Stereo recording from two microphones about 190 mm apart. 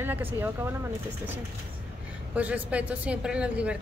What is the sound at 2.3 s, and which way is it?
Speech, 10° right (ahead or behind).